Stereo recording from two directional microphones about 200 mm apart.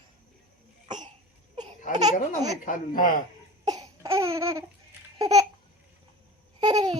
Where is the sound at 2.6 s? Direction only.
45° left (ahead or behind).